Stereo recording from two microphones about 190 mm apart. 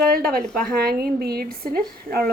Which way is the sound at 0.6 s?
50° right (ahead or behind).